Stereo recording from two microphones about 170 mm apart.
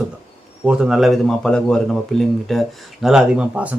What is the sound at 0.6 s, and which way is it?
Speech, 5° right (ahead or behind).